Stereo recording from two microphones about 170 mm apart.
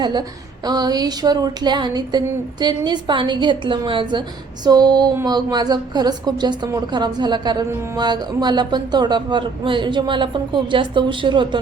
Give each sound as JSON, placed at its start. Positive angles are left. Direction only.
{"t": 0.0, "sound": "a woman's voice", "side_deg": -25}